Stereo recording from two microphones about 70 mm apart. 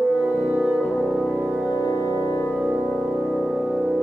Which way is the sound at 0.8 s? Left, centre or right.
Centre.